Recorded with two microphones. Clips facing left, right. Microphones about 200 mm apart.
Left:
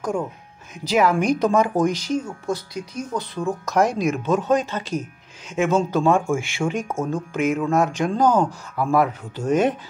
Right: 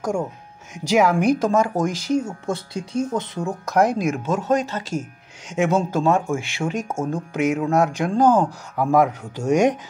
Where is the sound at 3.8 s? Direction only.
50° right (ahead or behind).